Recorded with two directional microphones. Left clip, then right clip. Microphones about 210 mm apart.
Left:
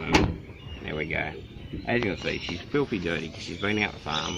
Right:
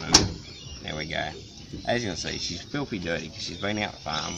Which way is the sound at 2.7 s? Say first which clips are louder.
Left 5 dB; 20° right (ahead or behind).